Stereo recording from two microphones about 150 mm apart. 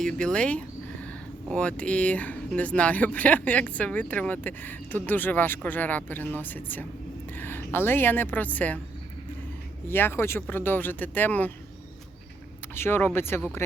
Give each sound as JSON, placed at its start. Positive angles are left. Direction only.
{"t": 0.0, "sound": "a woman's voice", "side_deg": 5}
{"t": 9.9, "sound": "speech", "side_deg": 15}
{"t": 12.7, "sound": "speech", "side_deg": 15}